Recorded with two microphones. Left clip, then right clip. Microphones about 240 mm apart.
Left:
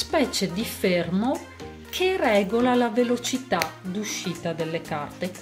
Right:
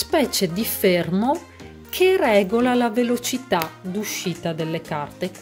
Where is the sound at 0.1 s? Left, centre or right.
Right.